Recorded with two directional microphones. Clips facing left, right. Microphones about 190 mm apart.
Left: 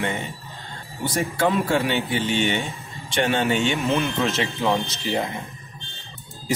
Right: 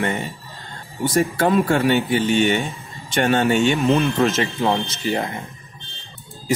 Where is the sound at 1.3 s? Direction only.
50° right (ahead or behind).